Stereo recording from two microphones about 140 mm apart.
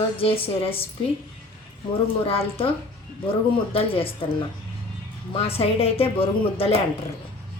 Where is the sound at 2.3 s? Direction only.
45° left (ahead or behind).